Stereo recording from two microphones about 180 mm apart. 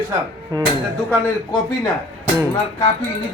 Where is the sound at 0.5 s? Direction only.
20° right (ahead or behind).